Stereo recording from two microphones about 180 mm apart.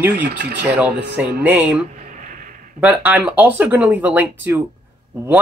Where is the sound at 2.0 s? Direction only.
45° right (ahead or behind).